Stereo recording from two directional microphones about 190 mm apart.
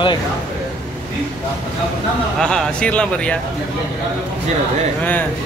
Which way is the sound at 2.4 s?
5° left (ahead or behind).